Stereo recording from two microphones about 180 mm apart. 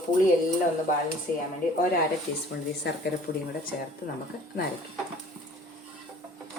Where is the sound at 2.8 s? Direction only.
65° left (ahead or behind).